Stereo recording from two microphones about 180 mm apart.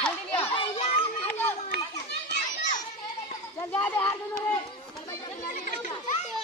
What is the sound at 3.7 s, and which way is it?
Children playing, 10° left (ahead or behind).